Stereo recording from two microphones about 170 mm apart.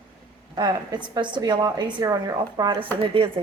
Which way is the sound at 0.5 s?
25° right (ahead or behind).